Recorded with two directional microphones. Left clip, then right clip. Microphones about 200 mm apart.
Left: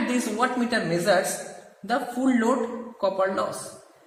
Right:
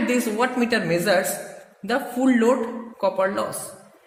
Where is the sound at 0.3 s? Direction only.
50° right (ahead or behind).